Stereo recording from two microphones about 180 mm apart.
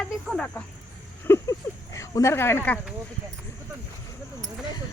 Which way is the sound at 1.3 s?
10° left (ahead or behind).